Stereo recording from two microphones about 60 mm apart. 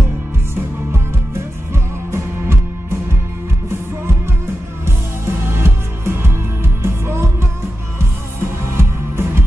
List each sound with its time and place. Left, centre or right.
1.7 s music: right
4.8 s music: right
8.6 s music: right